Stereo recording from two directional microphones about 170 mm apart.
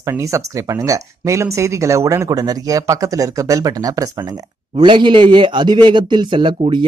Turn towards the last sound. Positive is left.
turn(degrees=-30)  # may be behind; listen again after turning